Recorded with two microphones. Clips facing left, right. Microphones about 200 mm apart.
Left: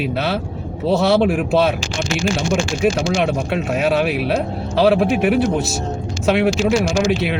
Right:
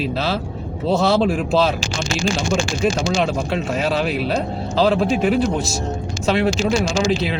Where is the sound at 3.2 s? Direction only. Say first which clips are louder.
Left 1 dB; 60° left (ahead or behind).